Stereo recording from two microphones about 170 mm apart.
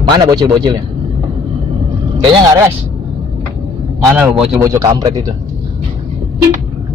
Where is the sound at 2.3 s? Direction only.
25° right (ahead or behind).